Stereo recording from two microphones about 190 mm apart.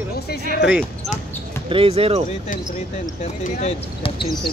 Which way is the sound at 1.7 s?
30° right (ahead or behind).